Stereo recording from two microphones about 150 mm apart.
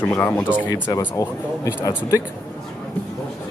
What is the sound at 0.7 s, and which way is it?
Speech, 20° left (ahead or behind).